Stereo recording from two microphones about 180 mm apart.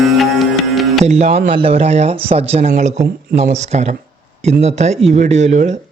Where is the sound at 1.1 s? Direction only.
35° right (ahead or behind).